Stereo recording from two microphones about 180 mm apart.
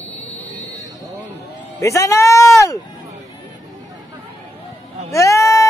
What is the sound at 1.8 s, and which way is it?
A man's voice, 15° left (ahead or behind).